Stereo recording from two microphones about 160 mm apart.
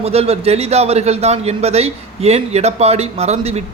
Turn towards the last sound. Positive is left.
turn(degrees=-40)  # may be behind; listen again after turning